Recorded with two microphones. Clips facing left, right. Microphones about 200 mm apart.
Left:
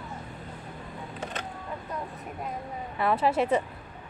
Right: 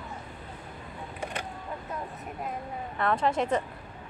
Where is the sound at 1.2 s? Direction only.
10° right (ahead or behind).